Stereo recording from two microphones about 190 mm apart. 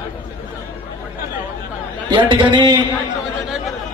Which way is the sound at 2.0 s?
25° right (ahead or behind).